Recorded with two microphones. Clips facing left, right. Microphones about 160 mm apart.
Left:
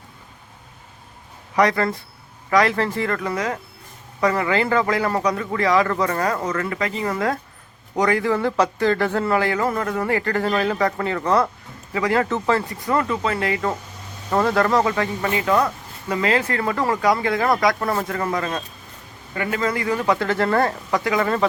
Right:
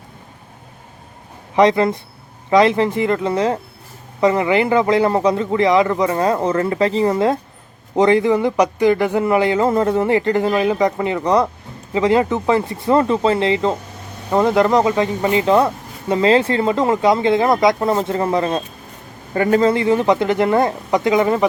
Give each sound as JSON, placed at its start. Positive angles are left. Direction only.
{"t": 1.5, "sound": "speech", "side_deg": -20}